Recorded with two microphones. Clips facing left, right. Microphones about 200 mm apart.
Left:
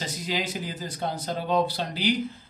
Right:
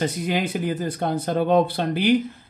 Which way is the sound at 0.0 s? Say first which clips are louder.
Right 7 dB; 60° right (ahead or behind).